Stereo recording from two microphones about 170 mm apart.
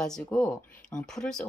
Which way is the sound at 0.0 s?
5° left (ahead or behind).